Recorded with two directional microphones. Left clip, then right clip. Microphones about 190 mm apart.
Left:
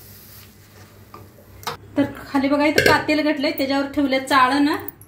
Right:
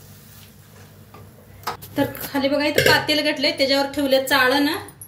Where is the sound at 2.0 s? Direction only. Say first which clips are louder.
Left 1 dB; 35° left (ahead or behind).